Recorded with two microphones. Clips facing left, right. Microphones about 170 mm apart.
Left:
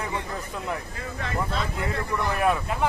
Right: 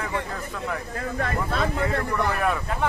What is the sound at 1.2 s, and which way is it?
Speech, 55° right (ahead or behind).